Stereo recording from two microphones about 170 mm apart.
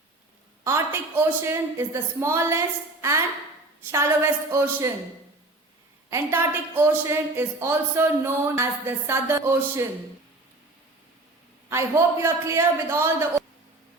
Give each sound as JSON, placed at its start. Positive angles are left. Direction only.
{"t": 0.6, "sound": "a woman's voice", "side_deg": -15}
{"t": 6.1, "sound": "a woman's voice", "side_deg": -15}
{"t": 11.7, "sound": "a woman's voice", "side_deg": -15}